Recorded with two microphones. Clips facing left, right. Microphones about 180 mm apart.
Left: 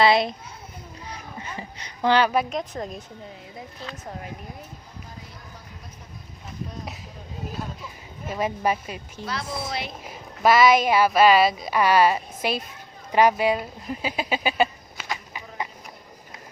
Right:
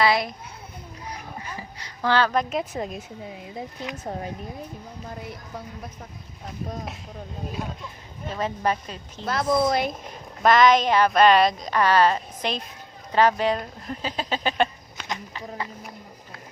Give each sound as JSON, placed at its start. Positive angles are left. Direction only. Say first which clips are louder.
{"t": 0.0, "sound": "a child's voice", "louder": "left 3 dB", "side_deg": 25}
{"t": 1.0, "sound": "a sound", "louder": "right 1 dB", "side_deg": 25}
{"t": 2.5, "sound": "a woman's voice", "louder": "right 2 dB", "side_deg": -5}
{"t": 8.3, "sound": "a woman's voice", "louder": "left 1 dB", "side_deg": 10}
{"t": 9.2, "sound": "speech", "louder": "right 10 dB", "side_deg": -50}
{"t": 10.1, "sound": "a woman's voice", "louder": "left 2 dB", "side_deg": 5}
{"t": 15.1, "sound": "a sound", "louder": "right 2 dB", "side_deg": 15}